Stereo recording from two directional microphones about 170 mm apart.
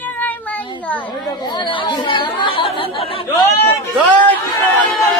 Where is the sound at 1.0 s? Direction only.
25° left (ahead or behind).